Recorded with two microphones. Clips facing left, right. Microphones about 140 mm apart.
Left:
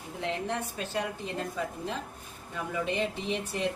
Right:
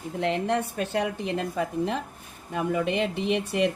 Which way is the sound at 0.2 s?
70° right (ahead or behind).